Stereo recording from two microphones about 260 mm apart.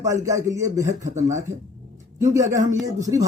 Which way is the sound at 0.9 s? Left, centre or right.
Right.